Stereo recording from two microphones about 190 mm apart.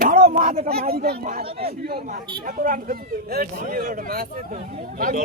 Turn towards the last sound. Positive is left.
turn(degrees=-45)  # may be behind; listen again after turning